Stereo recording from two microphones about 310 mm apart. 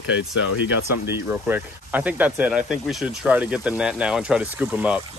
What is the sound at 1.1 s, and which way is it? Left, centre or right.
Speech, centre.